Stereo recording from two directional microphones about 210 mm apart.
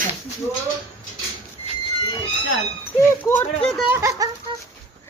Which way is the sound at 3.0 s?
10° left (ahead or behind).